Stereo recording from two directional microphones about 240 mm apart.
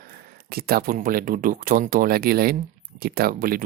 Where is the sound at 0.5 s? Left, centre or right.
Right.